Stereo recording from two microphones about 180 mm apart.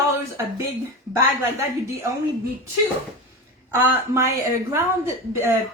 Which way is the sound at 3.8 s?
15° right (ahead or behind).